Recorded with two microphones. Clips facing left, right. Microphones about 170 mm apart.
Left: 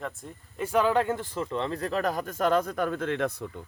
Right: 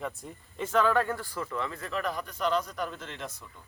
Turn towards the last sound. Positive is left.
turn(degrees=60)  # may be behind; listen again after turning